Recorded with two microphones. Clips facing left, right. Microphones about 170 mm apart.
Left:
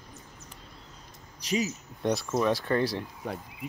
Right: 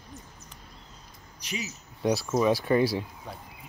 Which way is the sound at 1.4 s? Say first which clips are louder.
Left 8 dB; 40° left (ahead or behind).